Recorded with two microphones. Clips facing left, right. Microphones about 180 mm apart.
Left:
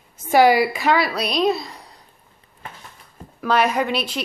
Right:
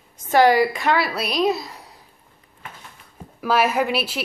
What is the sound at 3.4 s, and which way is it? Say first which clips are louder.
Speech: even; 5° right (ahead or behind).